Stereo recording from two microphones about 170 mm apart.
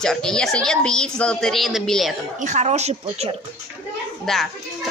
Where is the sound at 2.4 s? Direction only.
45° right (ahead or behind).